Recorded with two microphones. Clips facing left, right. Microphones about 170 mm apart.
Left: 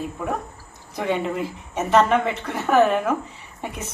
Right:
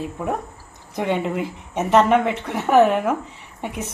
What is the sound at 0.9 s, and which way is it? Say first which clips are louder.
A woman's voice: right 1 dB; 20° right (ahead or behind).